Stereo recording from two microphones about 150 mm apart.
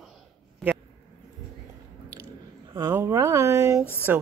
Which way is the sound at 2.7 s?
15° right (ahead or behind).